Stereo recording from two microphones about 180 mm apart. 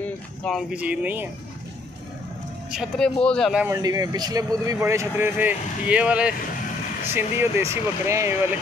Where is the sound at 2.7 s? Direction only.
5° right (ahead or behind).